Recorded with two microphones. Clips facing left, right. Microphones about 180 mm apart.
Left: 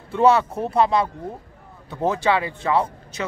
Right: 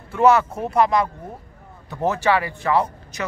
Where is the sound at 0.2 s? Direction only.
30° left (ahead or behind).